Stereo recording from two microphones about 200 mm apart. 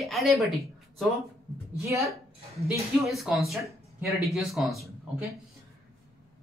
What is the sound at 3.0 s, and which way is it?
A man's voice, centre (ahead or behind).